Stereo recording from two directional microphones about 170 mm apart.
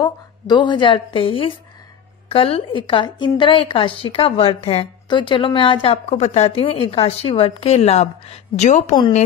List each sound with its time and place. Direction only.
0.0 s a woman's voice: 25° left (ahead or behind); by 8.9 s 45° left (ahead or behind)